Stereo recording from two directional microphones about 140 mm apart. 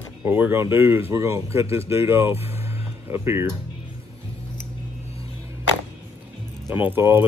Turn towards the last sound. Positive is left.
turn(degrees=-15)  # may be behind; listen again after turning